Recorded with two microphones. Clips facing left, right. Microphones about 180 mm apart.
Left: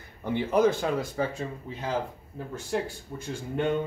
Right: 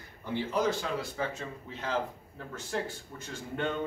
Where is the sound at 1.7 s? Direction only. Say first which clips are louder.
Left 1 dB; 15° left (ahead or behind).